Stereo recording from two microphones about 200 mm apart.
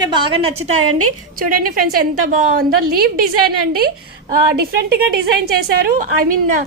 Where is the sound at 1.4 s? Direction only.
45° right (ahead or behind).